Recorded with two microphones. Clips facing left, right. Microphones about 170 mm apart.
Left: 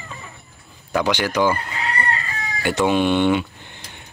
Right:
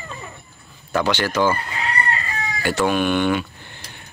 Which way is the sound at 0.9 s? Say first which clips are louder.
Even; 15° left (ahead or behind).